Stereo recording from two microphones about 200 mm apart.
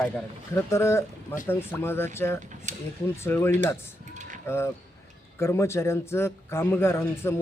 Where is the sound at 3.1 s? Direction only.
10° left (ahead or behind).